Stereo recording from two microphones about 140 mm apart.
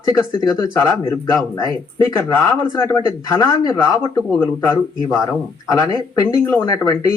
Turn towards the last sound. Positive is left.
turn(degrees=25)  # may be behind; listen again after turning